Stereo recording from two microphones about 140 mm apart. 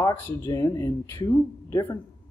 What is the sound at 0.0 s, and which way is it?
Speech, 20° left (ahead or behind).